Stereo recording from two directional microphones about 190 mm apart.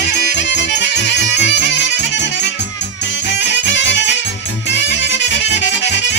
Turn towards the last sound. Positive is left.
turn(degrees=65)  # may be behind; listen again after turning